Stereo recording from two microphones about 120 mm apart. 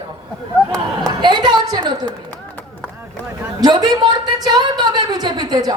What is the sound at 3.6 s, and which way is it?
A woman's voice, 35° right (ahead or behind).